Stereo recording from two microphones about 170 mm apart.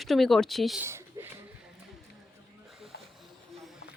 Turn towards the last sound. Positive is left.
turn(degrees=75)  # may be behind; listen again after turning